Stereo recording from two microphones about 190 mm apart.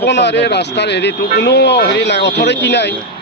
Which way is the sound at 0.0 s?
65° left (ahead or behind).